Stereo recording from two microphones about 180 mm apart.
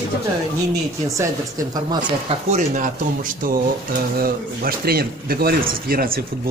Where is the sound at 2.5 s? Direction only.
45° right (ahead or behind).